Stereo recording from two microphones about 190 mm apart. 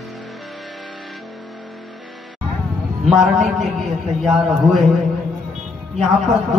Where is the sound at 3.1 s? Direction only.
Centre (ahead or behind).